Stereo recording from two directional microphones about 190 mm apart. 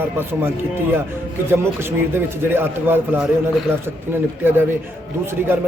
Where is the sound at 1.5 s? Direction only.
10° right (ahead or behind).